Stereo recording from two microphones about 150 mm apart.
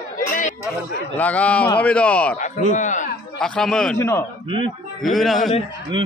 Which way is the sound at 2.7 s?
55° left (ahead or behind).